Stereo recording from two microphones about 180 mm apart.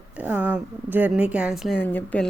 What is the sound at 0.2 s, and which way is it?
A woman's voice, 10° right (ahead or behind).